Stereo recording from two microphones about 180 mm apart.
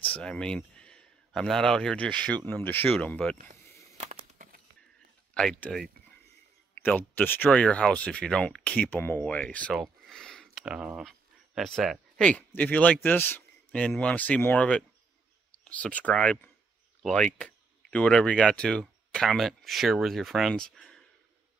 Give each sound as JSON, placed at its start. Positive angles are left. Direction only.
{"t": 0.0, "sound": "speech", "side_deg": 5}
{"t": 4.0, "sound": "a sound", "side_deg": -45}
{"t": 5.3, "sound": "speech", "side_deg": 5}